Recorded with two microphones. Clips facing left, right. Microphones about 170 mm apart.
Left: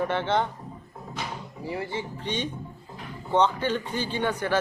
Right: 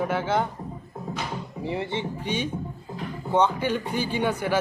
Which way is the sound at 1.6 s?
25° right (ahead or behind).